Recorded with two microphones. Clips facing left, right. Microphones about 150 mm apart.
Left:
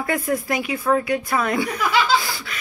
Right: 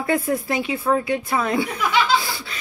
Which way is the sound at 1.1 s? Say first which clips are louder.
Even; 25° right (ahead or behind).